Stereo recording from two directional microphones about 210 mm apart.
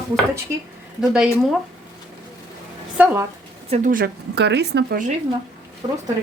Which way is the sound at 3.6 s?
35° right (ahead or behind).